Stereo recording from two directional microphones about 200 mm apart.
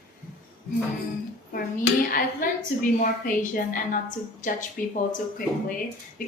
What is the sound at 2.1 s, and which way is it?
A woman's voice, 40° left (ahead or behind).